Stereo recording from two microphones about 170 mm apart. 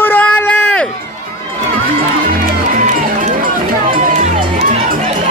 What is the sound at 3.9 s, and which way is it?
Music, 45° right (ahead or behind).